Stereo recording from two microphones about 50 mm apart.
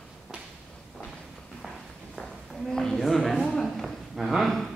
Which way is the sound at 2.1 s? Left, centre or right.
Centre.